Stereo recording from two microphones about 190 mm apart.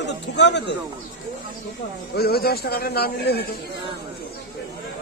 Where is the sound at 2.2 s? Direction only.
55° left (ahead or behind).